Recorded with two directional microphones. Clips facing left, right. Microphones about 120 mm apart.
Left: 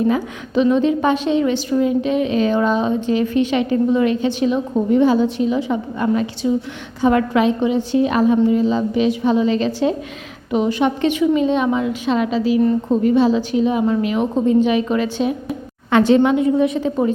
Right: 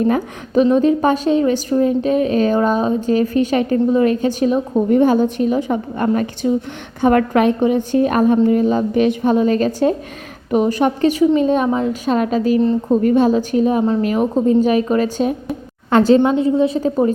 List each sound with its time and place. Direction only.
0.1 s a woman's voice: 45° right (ahead or behind)